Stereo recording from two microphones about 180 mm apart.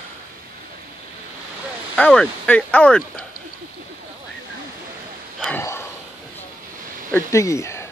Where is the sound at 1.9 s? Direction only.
5° left (ahead or behind).